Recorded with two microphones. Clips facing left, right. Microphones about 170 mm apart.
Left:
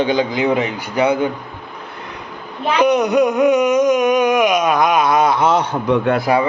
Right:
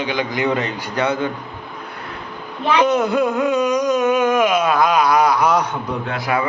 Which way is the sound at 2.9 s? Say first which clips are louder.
Left 3 dB; 15° left (ahead or behind).